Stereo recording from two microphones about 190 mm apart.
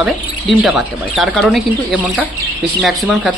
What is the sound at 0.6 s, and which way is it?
Speech, centre (ahead or behind).